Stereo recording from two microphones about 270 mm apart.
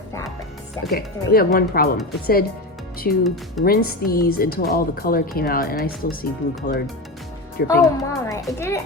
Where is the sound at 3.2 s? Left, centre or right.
Centre.